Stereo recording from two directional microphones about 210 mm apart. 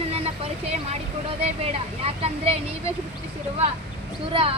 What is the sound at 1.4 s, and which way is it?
Speech, 30° right (ahead or behind).